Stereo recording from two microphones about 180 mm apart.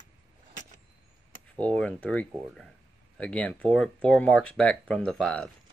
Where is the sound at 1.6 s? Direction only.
5° left (ahead or behind).